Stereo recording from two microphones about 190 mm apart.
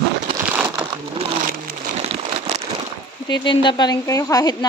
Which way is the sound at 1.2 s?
40° right (ahead or behind).